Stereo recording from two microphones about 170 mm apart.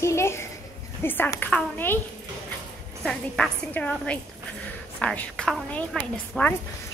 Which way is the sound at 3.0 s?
5° left (ahead or behind).